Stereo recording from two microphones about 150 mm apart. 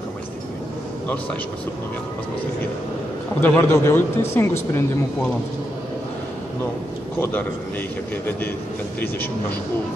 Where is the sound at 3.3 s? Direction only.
15° left (ahead or behind).